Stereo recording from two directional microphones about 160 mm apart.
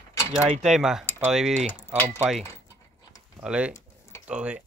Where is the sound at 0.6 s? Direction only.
Centre (ahead or behind).